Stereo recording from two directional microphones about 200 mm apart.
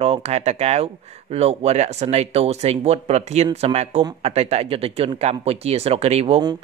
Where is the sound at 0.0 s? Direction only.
30° right (ahead or behind).